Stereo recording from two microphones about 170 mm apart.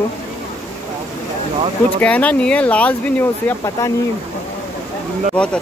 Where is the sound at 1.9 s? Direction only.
10° left (ahead or behind).